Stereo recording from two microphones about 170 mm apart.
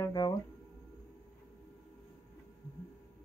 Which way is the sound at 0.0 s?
25° left (ahead or behind).